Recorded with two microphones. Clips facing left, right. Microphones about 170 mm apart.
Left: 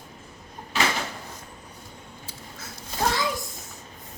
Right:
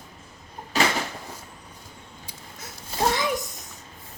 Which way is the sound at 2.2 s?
15° right (ahead or behind).